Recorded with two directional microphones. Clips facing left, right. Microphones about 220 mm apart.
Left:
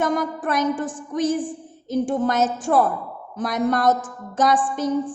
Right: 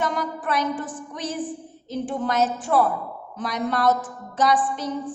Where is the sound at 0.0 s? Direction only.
45° left (ahead or behind).